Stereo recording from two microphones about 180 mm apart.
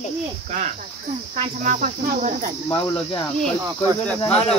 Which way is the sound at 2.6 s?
20° left (ahead or behind).